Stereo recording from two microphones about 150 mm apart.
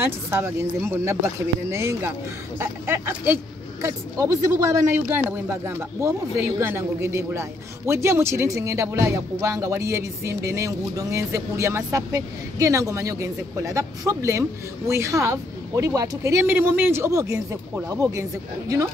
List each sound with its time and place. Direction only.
0.0 s a man's voice: 15° right (ahead or behind)